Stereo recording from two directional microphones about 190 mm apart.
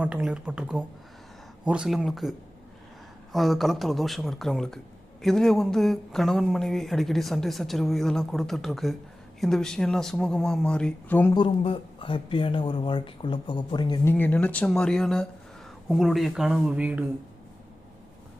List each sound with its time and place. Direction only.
0.0 s speech: 5° right (ahead or behind)
3.3 s speech: centre (ahead or behind)
11.3 s speech: 30° left (ahead or behind)
14.1 s speech: 10° left (ahead or behind); by 17.1 s 5° right (ahead or behind)